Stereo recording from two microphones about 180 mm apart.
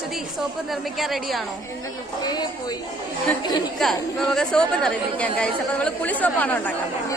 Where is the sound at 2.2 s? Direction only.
20° left (ahead or behind).